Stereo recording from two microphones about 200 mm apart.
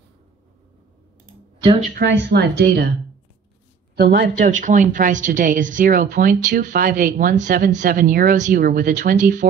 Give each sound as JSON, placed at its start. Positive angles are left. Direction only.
{"t": 2.0, "sound": "speech", "side_deg": -55}
{"t": 3.9, "sound": "speech", "side_deg": -55}
{"t": 4.5, "sound": "speech", "side_deg": -40}